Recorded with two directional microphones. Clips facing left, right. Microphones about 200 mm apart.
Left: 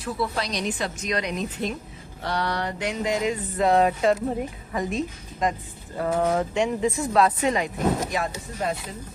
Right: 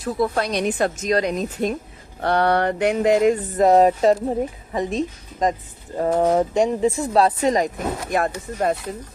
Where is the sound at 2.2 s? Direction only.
55° right (ahead or behind); by 4.1 s 40° right (ahead or behind).